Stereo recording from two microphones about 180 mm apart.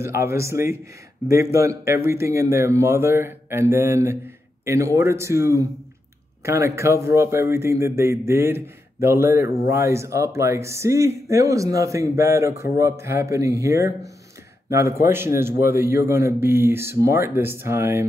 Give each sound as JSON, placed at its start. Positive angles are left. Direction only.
{"t": 0.0, "sound": "speech", "side_deg": -15}